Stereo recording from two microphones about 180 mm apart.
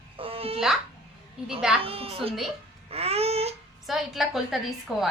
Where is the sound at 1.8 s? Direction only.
30° right (ahead or behind).